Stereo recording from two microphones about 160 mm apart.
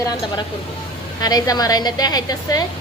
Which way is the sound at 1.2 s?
25° left (ahead or behind).